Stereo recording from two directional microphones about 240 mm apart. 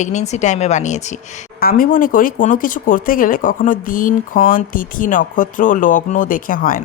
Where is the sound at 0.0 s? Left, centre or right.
Left.